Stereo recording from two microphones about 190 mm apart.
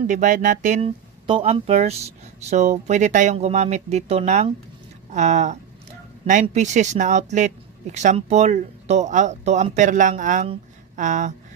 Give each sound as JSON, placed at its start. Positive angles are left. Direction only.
{"t": 0.0, "sound": "speech", "side_deg": -45}
{"t": 1.2, "sound": "speech", "side_deg": -30}